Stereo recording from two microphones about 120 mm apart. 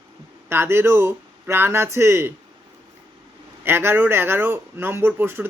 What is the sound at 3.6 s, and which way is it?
Speech, 20° right (ahead or behind).